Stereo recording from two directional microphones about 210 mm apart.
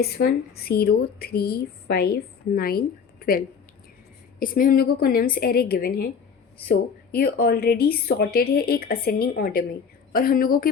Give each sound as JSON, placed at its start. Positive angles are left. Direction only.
{"t": 0.0, "sound": "speech", "side_deg": 50}